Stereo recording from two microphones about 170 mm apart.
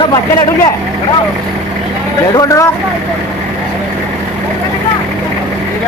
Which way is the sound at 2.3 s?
20° left (ahead or behind).